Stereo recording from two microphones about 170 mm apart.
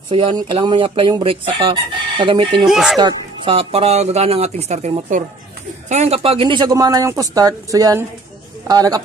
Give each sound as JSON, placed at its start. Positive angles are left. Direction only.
{"t": 0.1, "sound": "speech", "side_deg": -30}
{"t": 2.6, "sound": "speech", "side_deg": 0}
{"t": 3.0, "sound": "speech", "side_deg": -25}